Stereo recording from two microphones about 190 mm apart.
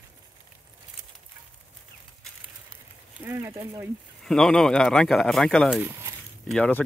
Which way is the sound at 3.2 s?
15° right (ahead or behind).